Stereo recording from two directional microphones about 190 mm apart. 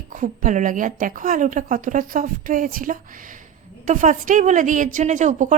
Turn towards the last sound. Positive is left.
turn(degrees=-40)  # may be behind; listen again after turning